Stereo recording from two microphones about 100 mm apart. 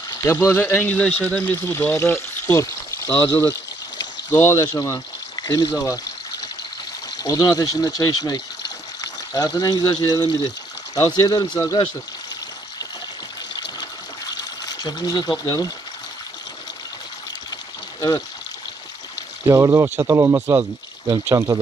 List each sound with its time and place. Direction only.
0.2 s speech: 25° left (ahead or behind)
3.3 s speech: 25° left (ahead or behind)
4.7 s pour: 35° left (ahead or behind)
5.7 s speech: 30° left (ahead or behind)
7.2 s speech: 35° left (ahead or behind)
14.3 s a sound: 40° left (ahead or behind)
19.5 s speech: 30° right (ahead or behind)